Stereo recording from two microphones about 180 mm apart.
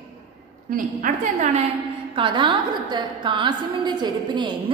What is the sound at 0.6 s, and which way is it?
A woman's voice, 50° right (ahead or behind).